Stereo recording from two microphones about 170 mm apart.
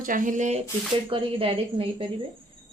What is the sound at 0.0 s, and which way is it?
Speech, 50° right (ahead or behind).